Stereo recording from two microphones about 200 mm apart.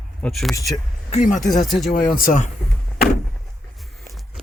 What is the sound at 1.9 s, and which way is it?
Speech, 50° left (ahead or behind).